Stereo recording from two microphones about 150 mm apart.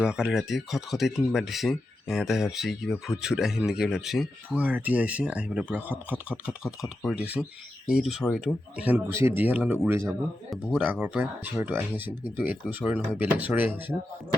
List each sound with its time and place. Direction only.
0.0 s speech: 5° right (ahead or behind)
8.8 s speech: 15° right (ahead or behind)
10.1 s speech: centre (ahead or behind)